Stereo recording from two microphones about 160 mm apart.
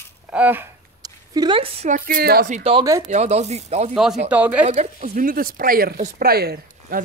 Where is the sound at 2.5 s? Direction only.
35° right (ahead or behind).